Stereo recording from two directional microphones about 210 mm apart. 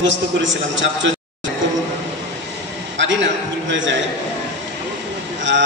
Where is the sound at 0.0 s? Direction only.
60° right (ahead or behind).